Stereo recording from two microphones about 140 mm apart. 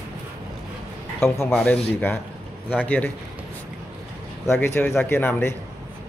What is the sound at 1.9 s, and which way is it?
A man's voice, 15° left (ahead or behind).